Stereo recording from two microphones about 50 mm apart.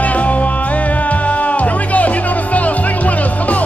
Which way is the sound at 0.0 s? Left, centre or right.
Left.